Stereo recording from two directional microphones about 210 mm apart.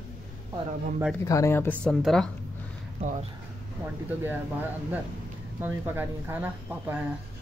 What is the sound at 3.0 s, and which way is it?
Speech, 40° right (ahead or behind).